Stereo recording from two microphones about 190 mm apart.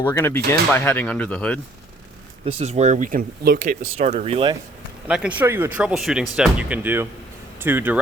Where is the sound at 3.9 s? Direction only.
35° right (ahead or behind).